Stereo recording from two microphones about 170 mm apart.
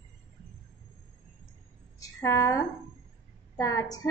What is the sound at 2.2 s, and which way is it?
A woman's voice, 20° left (ahead or behind).